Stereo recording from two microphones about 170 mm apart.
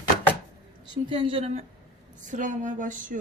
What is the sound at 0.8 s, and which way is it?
Speech, 30° right (ahead or behind).